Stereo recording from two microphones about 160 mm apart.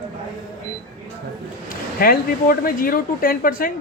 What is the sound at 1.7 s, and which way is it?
Speech, 65° left (ahead or behind).